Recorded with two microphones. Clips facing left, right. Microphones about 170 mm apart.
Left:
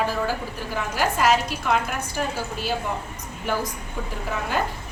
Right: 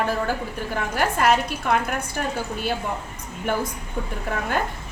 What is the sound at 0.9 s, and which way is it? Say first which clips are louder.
Speech: even; 55° right (ahead or behind).